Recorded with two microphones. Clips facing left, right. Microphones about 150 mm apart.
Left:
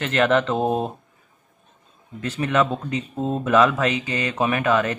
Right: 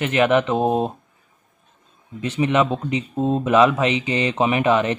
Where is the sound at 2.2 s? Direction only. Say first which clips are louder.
Right 2 dB; 20° right (ahead or behind).